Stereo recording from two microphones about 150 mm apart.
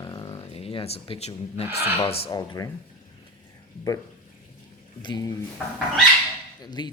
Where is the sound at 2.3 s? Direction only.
25° left (ahead or behind).